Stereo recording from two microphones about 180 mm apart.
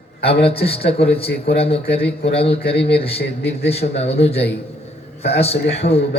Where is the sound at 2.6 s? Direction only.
65° left (ahead or behind).